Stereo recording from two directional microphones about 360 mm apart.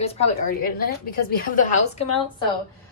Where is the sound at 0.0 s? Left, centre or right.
Centre.